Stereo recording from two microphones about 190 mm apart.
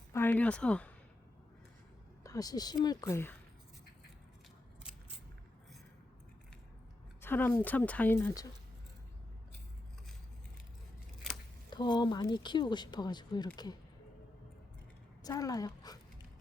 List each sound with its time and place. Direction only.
0.1 s speech: 10° left (ahead or behind)
2.2 s speech: 20° left (ahead or behind)
7.2 s speech: 10° left (ahead or behind)
11.7 s speech: 25° left (ahead or behind)
15.2 s speech: 20° left (ahead or behind)